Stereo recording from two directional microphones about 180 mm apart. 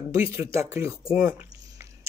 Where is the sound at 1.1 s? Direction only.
15° right (ahead or behind).